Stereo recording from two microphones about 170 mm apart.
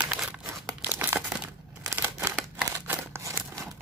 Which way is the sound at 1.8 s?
15° right (ahead or behind).